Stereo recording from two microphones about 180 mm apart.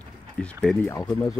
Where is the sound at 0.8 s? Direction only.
15° left (ahead or behind).